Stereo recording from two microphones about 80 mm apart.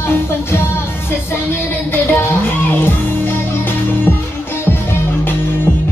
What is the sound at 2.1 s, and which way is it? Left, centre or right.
Music, left.